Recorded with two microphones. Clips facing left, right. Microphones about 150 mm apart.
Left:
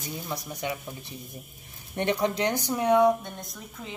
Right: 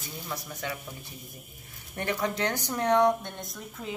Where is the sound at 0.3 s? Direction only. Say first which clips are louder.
Left 3 dB; 15° left (ahead or behind).